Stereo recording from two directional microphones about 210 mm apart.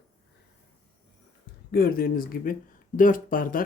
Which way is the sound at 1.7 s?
45° left (ahead or behind).